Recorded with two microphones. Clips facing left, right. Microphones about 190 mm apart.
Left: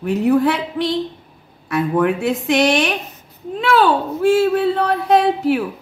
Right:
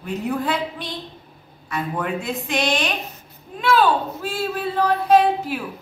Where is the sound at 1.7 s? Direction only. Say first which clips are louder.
Left 8 dB; 70° left (ahead or behind).